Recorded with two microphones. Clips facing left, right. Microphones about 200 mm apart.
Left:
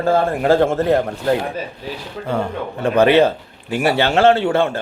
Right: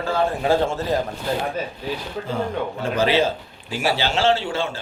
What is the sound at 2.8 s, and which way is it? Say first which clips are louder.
Speech: left 8 dB; 60° left (ahead or behind).